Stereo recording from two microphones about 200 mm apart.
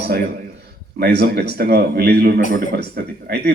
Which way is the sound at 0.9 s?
50° right (ahead or behind).